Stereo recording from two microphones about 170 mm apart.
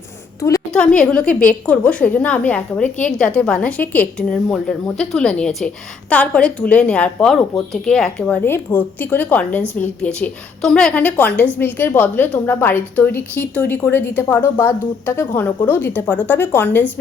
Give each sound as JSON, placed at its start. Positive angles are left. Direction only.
{"t": 0.3, "sound": "a woman's voice", "side_deg": 20}
{"t": 0.7, "sound": "a woman's voice", "side_deg": 5}